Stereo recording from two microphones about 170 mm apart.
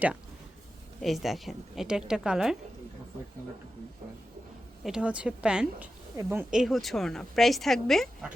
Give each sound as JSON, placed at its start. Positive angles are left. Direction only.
{"t": 1.0, "sound": "a woman's voice", "side_deg": 0}
{"t": 4.8, "sound": "a woman's voice", "side_deg": -5}